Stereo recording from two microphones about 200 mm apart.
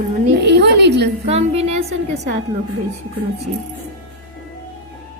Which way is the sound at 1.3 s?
30° right (ahead or behind).